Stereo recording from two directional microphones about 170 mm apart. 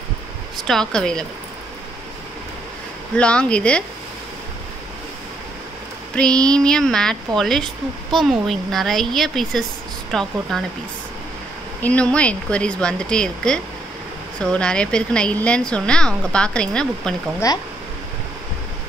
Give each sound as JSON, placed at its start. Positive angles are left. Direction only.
{"t": 0.7, "sound": "a woman's voice", "side_deg": 5}
{"t": 3.2, "sound": "speech", "side_deg": 5}
{"t": 6.1, "sound": "a woman's voice", "side_deg": 5}
{"t": 11.8, "sound": "a woman's voice", "side_deg": 5}